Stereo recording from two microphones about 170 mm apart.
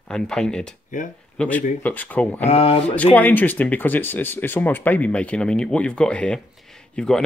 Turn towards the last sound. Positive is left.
turn(degrees=5)  # may be behind; listen again after turning